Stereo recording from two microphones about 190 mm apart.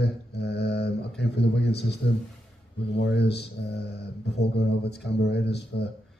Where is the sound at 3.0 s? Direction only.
60° left (ahead or behind).